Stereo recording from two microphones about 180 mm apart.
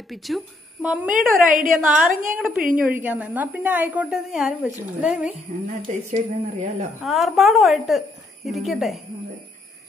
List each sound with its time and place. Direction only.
0.1 s speech: centre (ahead or behind)
1.1 s speech: 45° right (ahead or behind)
1.9 s a woman's voice: centre (ahead or behind)
5.7 s speech: 45° right (ahead or behind)
7.0 s speech: centre (ahead or behind)